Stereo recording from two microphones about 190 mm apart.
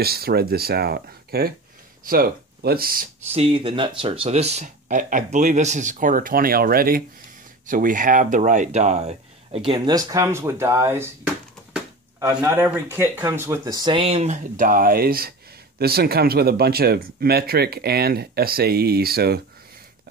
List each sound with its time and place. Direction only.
0.0 s speech: 55° right (ahead or behind)
3.3 s speech: 30° right (ahead or behind); by 11.1 s 15° right (ahead or behind)
12.4 s speech: 10° right (ahead or behind); by 19.4 s 55° right (ahead or behind)